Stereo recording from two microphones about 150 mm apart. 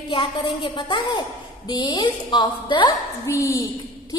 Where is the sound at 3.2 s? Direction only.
20° left (ahead or behind).